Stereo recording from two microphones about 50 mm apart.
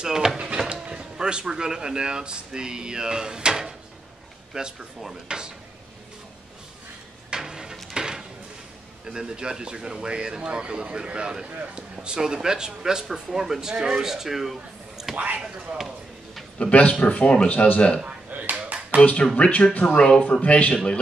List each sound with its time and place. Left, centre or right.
0.0 s speech: centre
7.2 s a sound: centre
9.0 s speech: centre
15.1 s speech: right
16.5 s speech: left
18.0 s finger snapping: right
18.9 s speech: left
19.9 s speech: centre